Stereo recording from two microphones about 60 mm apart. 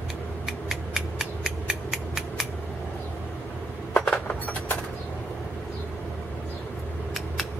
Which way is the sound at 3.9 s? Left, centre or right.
Centre.